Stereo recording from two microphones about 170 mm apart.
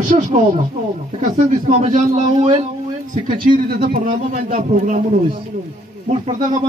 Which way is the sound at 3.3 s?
60° right (ahead or behind).